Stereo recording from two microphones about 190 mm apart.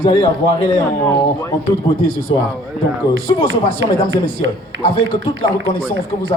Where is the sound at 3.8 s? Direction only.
90° right.